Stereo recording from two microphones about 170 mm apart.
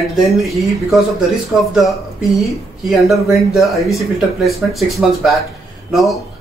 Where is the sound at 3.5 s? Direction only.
Centre (ahead or behind).